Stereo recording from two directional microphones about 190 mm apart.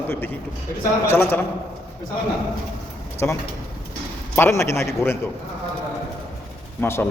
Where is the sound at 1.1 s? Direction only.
10° left (ahead or behind).